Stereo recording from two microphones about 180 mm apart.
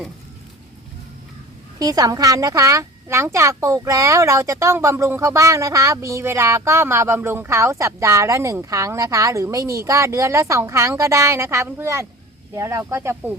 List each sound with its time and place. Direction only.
1.8 s speech: 20° right (ahead or behind)